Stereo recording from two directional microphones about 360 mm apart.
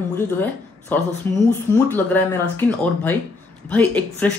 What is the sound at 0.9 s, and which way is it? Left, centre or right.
Speech, centre.